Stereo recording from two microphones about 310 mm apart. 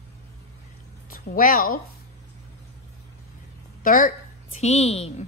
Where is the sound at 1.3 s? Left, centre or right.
Left.